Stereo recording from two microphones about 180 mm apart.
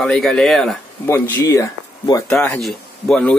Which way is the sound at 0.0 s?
5° left (ahead or behind).